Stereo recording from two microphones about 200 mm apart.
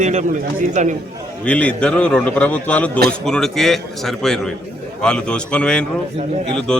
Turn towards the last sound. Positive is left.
turn(degrees=5)  # may be behind; listen again after turning